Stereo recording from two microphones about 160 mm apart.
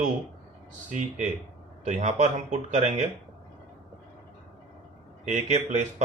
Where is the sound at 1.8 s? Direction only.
45° right (ahead or behind).